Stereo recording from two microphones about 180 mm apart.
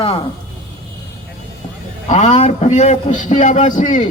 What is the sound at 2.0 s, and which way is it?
A man's voice, 40° left (ahead or behind).